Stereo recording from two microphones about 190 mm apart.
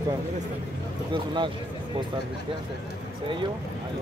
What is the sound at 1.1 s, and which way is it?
Speech, 25° right (ahead or behind).